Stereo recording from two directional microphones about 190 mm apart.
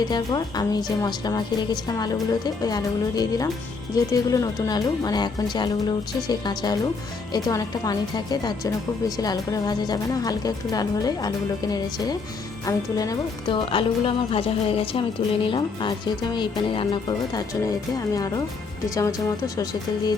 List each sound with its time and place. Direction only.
0.0 s speech: 20° left (ahead or behind)